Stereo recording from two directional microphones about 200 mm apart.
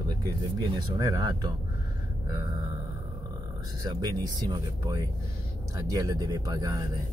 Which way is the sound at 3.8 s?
20° right (ahead or behind).